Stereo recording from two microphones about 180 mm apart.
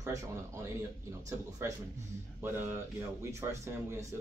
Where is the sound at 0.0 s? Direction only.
15° right (ahead or behind).